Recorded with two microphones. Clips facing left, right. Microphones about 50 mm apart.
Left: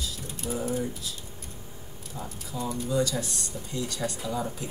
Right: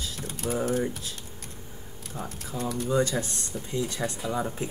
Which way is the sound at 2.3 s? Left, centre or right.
Right.